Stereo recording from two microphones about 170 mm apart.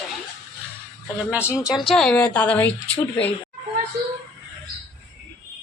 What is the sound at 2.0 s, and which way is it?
A woman's voice, 5° left (ahead or behind).